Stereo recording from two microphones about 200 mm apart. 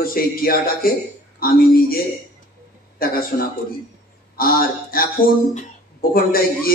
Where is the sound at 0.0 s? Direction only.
45° left (ahead or behind).